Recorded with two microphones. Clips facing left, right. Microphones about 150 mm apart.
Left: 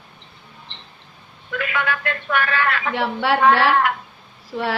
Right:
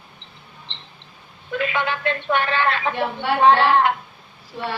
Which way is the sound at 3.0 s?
90° left.